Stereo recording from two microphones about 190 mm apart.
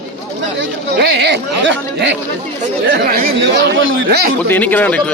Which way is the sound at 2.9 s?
55° right (ahead or behind).